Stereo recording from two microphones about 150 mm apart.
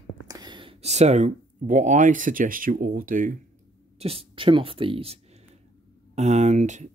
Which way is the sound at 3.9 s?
40° right (ahead or behind).